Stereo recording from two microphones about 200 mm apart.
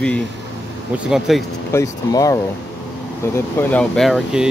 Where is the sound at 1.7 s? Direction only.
15° left (ahead or behind).